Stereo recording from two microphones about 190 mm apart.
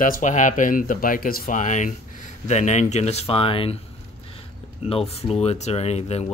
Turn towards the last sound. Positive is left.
turn(degrees=35)  # may be behind; listen again after turning